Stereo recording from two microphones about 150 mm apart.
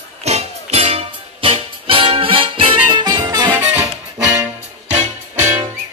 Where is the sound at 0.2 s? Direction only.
45° right (ahead or behind); by 3.4 s 30° right (ahead or behind).